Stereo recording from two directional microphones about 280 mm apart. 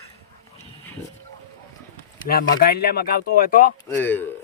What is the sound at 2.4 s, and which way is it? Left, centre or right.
Speech, left.